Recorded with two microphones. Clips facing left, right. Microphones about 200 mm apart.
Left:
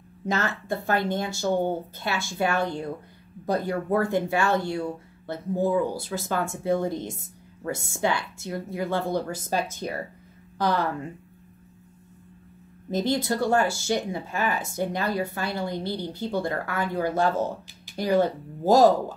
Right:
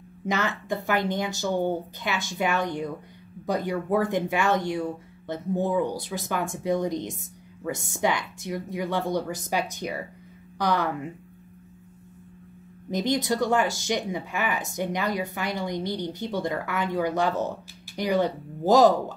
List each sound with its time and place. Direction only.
0.4 s speech: 20° right (ahead or behind)
12.9 s speech: 20° right (ahead or behind)